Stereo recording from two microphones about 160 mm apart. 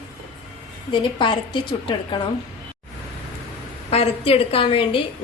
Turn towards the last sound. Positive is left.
turn(degrees=35)  # may be behind; listen again after turning